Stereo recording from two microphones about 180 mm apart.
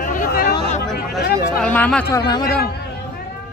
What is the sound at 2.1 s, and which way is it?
Speech, 20° left (ahead or behind).